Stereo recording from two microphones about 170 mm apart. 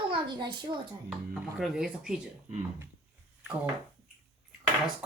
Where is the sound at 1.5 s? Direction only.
5° right (ahead or behind).